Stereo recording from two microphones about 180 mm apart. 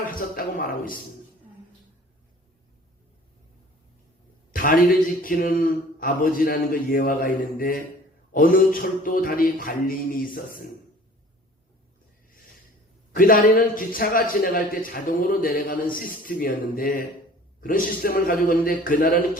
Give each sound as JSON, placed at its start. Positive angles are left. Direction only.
{"t": 0.2, "sound": "a man's voice", "side_deg": 50}
{"t": 4.5, "sound": "a man's voice", "side_deg": 50}
{"t": 13.1, "sound": "a man's voice", "side_deg": 50}